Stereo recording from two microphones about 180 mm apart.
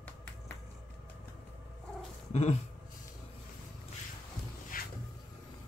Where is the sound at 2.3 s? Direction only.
35° left (ahead or behind).